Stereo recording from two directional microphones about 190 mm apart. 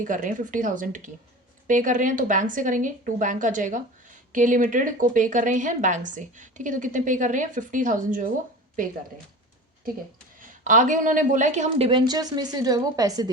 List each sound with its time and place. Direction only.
0.0 s a woman's voice: 45° right (ahead or behind)
10.4 s a woman's voice: 45° right (ahead or behind)
11.9 s a woman's voice: 25° right (ahead or behind)